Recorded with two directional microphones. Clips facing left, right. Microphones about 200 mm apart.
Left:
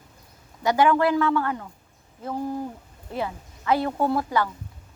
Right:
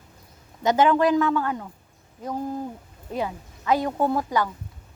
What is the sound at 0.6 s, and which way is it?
Speech, 20° right (ahead or behind).